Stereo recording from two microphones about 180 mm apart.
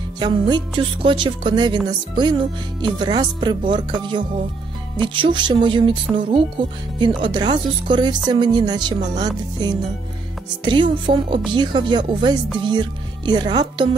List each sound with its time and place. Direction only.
0.2 s speech: 25° right (ahead or behind)
2.8 s speech: 25° right (ahead or behind)